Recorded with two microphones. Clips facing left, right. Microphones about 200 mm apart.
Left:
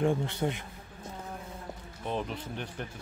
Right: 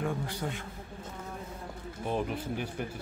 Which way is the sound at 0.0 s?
25° left (ahead or behind).